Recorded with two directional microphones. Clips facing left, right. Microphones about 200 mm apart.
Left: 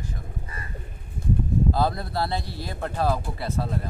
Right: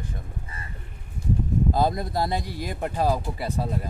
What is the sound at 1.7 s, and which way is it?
Speech, 15° right (ahead or behind).